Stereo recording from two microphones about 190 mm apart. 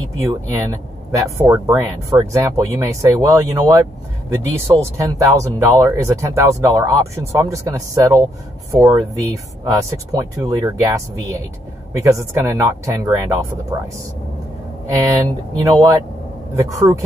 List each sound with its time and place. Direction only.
0.2 s speech: 15° right (ahead or behind)
14.9 s speech: 20° right (ahead or behind)